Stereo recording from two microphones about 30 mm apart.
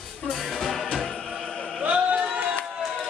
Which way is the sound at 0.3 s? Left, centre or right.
Centre.